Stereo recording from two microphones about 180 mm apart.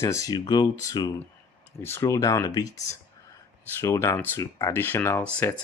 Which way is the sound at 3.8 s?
15° left (ahead or behind).